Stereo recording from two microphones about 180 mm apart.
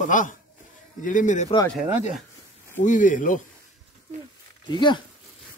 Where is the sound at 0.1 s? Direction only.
45° left (ahead or behind).